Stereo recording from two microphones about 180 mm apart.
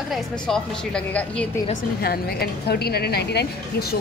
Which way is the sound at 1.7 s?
60° left (ahead or behind).